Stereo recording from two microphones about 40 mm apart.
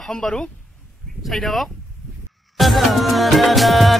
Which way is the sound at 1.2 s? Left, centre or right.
Centre.